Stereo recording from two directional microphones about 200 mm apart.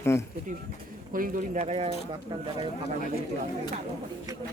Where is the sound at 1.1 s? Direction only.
40° right (ahead or behind).